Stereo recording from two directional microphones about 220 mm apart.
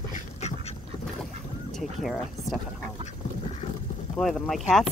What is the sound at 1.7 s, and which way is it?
Vehicle, centre (ahead or behind).